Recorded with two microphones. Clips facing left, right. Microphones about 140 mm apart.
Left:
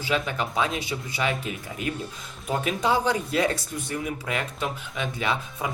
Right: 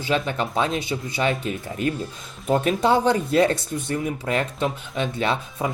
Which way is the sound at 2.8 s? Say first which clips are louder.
Right 2 dB; 30° right (ahead or behind).